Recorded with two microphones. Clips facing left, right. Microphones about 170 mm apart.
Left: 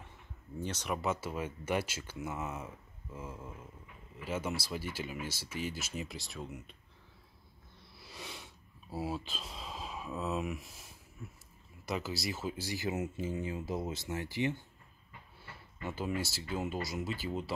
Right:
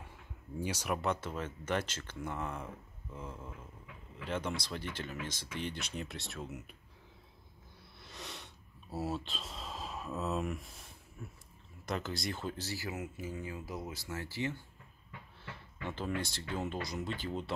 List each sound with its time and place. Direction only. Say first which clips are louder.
0.6 s speech: right 1 dB; 10° right (ahead or behind)
0.9 s speech: left 2 dB; 5° left (ahead or behind)
8.0 s a sound: even; centre (ahead or behind)
8.9 s speech: even; centre (ahead or behind); by 14.6 s 20° left (ahead or behind)
15.8 s speech: left 1 dB; 10° left (ahead or behind)